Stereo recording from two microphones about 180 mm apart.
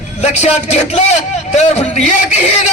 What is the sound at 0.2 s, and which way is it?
A man's voice, 35° left (ahead or behind).